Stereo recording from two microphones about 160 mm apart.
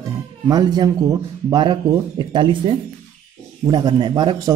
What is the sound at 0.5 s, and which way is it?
A man's voice, 25° right (ahead or behind).